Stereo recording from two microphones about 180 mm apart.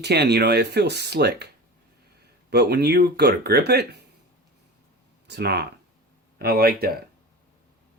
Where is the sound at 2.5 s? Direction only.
65° right (ahead or behind).